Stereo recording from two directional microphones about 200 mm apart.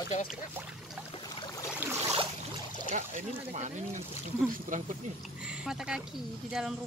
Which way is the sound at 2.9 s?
35° right (ahead or behind).